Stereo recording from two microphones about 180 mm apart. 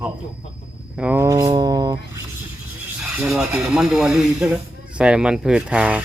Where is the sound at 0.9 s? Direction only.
10° right (ahead or behind).